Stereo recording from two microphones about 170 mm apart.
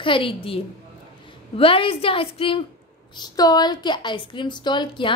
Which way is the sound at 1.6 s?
30° left (ahead or behind).